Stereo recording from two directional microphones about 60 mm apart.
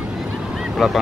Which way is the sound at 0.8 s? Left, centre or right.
Centre.